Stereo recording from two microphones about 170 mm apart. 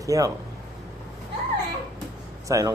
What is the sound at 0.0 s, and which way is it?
Speech, 20° right (ahead or behind).